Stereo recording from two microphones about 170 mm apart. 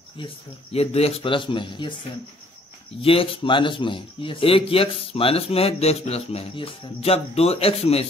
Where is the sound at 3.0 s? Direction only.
35° left (ahead or behind).